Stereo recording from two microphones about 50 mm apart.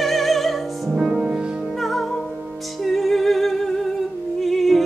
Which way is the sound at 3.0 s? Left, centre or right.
Centre.